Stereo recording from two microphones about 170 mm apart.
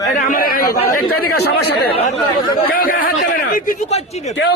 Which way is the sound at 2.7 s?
55° left (ahead or behind).